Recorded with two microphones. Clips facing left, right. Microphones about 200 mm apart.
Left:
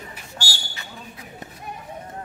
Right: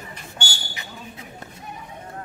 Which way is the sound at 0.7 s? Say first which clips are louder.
Right 1 dB; 20° right (ahead or behind).